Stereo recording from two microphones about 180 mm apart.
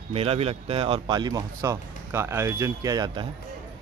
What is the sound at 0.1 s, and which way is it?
Speech, 35° right (ahead or behind).